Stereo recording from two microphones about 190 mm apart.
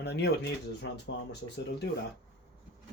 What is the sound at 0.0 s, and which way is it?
Speech, 60° left (ahead or behind).